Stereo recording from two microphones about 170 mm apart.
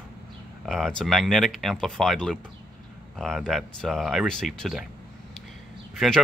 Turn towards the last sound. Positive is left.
turn(degrees=0)  # may be behind; listen again after turning